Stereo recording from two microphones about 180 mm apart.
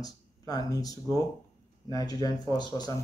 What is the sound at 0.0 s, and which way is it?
Speech, 20° left (ahead or behind).